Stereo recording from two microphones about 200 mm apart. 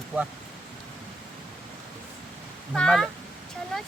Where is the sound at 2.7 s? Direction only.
Centre (ahead or behind).